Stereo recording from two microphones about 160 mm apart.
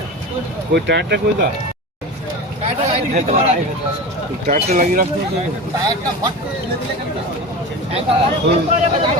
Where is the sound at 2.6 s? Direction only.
45° right (ahead or behind).